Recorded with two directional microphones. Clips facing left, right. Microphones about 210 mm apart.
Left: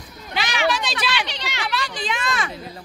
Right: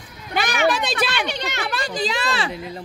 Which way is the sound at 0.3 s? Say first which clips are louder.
Right 3 dB; 50° right (ahead or behind).